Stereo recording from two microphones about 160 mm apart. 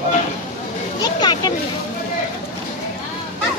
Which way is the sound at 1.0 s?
25° left (ahead or behind).